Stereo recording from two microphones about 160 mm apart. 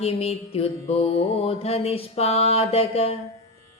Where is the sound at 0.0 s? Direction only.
40° left (ahead or behind).